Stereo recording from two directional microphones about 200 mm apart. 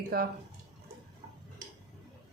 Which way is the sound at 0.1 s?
50° right (ahead or behind).